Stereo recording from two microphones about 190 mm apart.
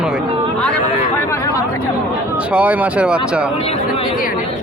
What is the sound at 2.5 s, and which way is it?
Speech, 10° right (ahead or behind).